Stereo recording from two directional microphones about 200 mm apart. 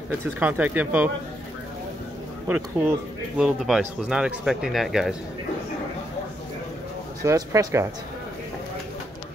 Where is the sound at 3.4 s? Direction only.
Centre (ahead or behind).